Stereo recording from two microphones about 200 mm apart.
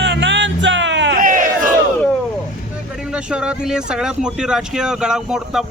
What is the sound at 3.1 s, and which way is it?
Speech, 5° right (ahead or behind).